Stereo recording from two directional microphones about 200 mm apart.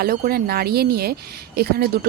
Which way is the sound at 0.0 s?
50° right (ahead or behind).